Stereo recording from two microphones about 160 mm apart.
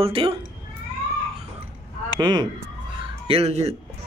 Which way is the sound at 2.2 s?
25° right (ahead or behind).